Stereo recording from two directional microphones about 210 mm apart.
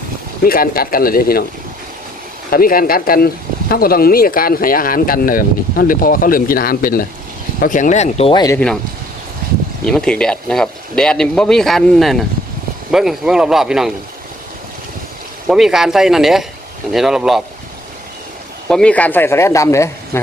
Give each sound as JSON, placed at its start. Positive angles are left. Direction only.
{"t": 0.4, "sound": "speech", "side_deg": 45}
{"t": 2.5, "sound": "speech", "side_deg": 45}
{"t": 8.5, "sound": "speech", "side_deg": 5}
{"t": 9.8, "sound": "speech", "side_deg": 5}
{"t": 15.4, "sound": "speech", "side_deg": 0}
{"t": 18.7, "sound": "speech", "side_deg": 5}